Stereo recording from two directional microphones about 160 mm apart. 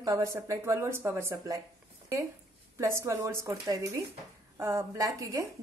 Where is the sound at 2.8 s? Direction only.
15° right (ahead or behind).